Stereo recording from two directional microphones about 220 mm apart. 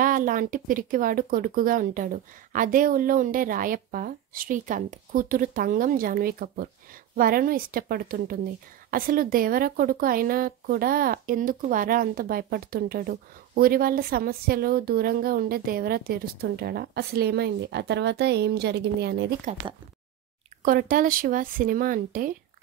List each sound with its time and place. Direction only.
0.0 s speech: 35° right (ahead or behind)
20.6 s speech: 40° right (ahead or behind)